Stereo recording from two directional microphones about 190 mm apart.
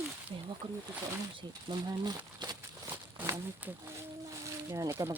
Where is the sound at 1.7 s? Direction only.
25° right (ahead or behind).